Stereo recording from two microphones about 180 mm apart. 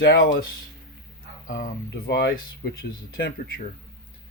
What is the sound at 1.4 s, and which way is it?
Speech, 50° left (ahead or behind).